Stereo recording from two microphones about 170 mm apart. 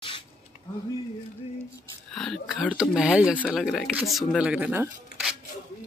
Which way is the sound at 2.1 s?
Centre (ahead or behind).